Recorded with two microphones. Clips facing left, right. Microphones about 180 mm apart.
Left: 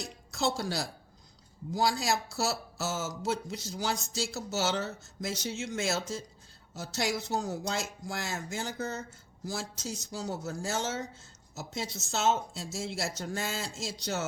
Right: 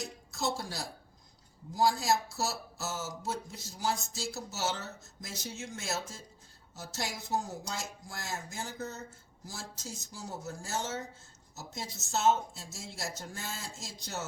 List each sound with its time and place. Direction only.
0.3 s speech: 80° left
9.5 s speech: 80° left